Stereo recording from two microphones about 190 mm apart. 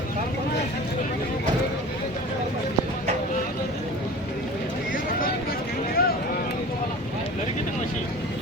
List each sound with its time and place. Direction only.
6.0 s vehicle: 50° left (ahead or behind)